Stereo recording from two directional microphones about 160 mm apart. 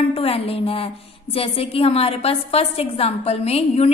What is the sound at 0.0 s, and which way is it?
A woman's voice, 35° left (ahead or behind).